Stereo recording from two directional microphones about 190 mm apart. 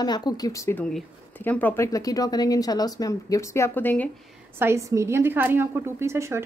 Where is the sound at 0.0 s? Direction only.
20° left (ahead or behind).